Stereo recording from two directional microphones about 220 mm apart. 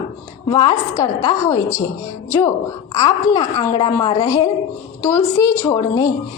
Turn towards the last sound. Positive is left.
turn(degrees=15)  # may be behind; listen again after turning